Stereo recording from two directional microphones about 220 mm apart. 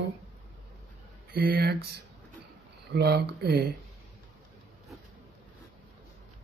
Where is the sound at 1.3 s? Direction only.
45° right (ahead or behind).